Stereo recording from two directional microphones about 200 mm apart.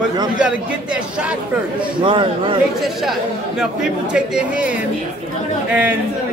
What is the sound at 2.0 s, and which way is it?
Speech, 25° right (ahead or behind).